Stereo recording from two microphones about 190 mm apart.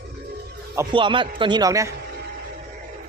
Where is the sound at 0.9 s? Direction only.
25° right (ahead or behind).